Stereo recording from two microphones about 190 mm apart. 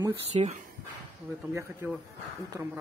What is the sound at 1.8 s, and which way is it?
Speech, 10° right (ahead or behind).